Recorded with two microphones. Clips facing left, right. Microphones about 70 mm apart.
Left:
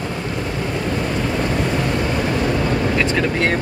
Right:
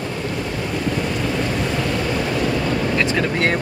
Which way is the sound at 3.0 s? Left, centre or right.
Centre.